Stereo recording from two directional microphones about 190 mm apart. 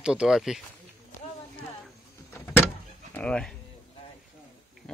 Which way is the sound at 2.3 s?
10° left (ahead or behind).